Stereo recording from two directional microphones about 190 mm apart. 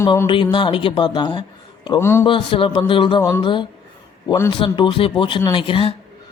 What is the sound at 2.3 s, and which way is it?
Speech, 25° left (ahead or behind).